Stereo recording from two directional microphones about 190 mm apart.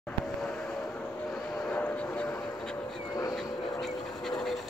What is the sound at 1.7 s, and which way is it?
Vehicle, 10° left (ahead or behind).